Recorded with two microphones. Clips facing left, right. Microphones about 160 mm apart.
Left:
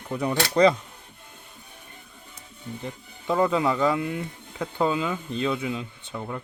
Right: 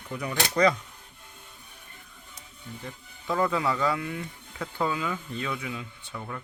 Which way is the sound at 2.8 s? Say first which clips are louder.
Left 4 dB; 20° left (ahead or behind).